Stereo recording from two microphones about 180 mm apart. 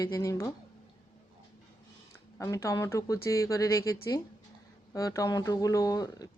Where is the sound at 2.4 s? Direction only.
15° left (ahead or behind).